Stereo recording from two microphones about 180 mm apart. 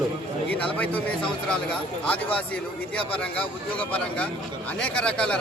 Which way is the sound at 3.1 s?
5° left (ahead or behind).